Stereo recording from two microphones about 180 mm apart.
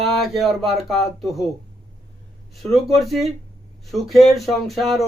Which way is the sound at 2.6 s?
Centre (ahead or behind).